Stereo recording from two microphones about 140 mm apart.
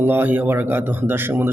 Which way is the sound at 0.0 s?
15° right (ahead or behind).